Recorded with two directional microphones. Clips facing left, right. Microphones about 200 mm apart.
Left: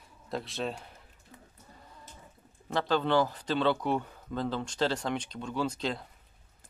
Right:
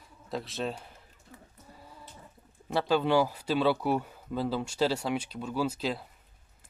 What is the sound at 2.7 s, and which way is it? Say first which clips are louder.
Speech: right 2 dB; 10° right (ahead or behind).